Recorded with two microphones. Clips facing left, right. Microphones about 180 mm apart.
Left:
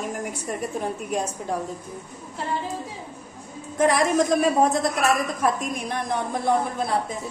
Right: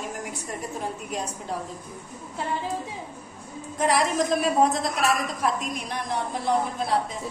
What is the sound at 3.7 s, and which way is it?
A woman's voice, 50° left (ahead or behind).